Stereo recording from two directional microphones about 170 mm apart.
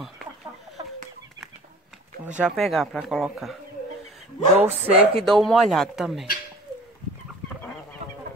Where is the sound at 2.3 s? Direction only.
5° right (ahead or behind).